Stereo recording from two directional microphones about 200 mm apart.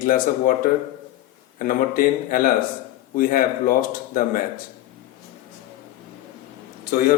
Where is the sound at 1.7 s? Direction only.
45° left (ahead or behind).